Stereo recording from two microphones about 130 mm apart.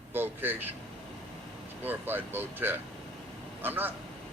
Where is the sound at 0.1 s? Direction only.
15° right (ahead or behind).